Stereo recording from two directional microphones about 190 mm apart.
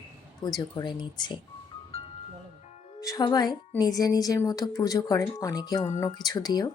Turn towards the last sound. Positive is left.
turn(degrees=20)  # may be behind; listen again after turning